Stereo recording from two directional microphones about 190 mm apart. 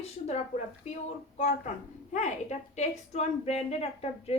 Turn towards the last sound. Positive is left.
turn(degrees=30)  # may be behind; listen again after turning